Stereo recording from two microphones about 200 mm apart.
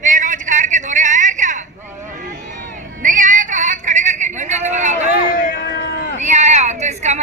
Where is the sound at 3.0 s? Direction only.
40° right (ahead or behind).